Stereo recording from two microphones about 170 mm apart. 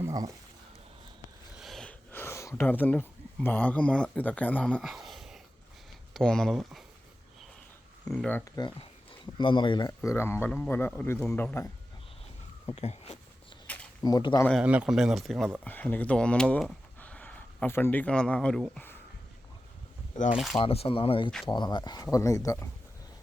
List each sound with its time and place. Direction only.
0.0 s a sound: 20° right (ahead or behind)
1.5 s a sound: centre (ahead or behind)
6.1 s speech: 5° left (ahead or behind)
8.0 s speech: 5° left (ahead or behind)
9.4 s speech: 30° left (ahead or behind); by 11.7 s 15° left (ahead or behind)
12.7 s speech: 40° left (ahead or behind)
13.7 s a sound: 10° left (ahead or behind)
14.0 s speech: 25° left (ahead or behind)
14.6 s speech: 5° right (ahead or behind)
15.6 s speech: 10° left (ahead or behind)
20.3 s speech: centre (ahead or behind)
20.6 s speech: 35° left (ahead or behind); by 22.7 s 20° left (ahead or behind)